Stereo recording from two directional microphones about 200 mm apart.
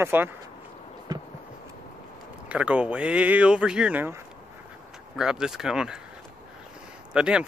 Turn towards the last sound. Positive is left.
turn(degrees=-5)  # may be behind; listen again after turning